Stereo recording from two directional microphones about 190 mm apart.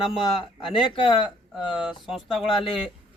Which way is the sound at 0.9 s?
25° left (ahead or behind).